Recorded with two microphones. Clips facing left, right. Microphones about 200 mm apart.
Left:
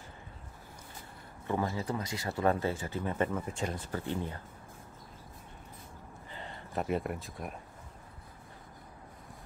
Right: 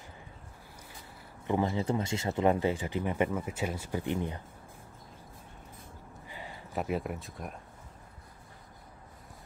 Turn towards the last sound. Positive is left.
turn(degrees=0)  # may be behind; listen again after turning